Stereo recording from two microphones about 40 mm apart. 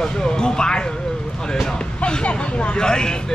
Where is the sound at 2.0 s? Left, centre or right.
Left.